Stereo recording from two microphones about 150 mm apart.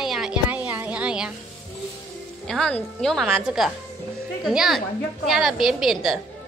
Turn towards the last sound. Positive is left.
turn(degrees=0)  # may be behind; listen again after turning